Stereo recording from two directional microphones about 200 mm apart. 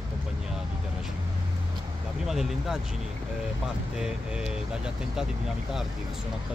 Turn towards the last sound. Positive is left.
turn(degrees=-5)  # may be behind; listen again after turning